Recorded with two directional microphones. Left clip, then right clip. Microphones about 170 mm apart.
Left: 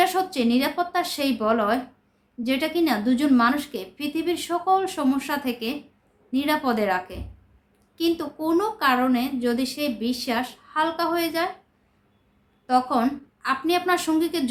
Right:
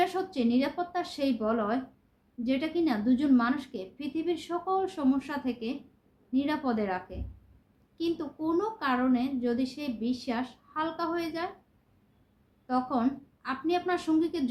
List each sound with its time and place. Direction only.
0.0 s a woman's voice: 15° left (ahead or behind)
12.6 s a woman's voice: 15° left (ahead or behind)